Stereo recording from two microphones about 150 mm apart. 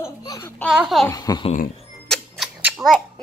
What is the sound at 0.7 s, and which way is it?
Speech, 5° right (ahead or behind).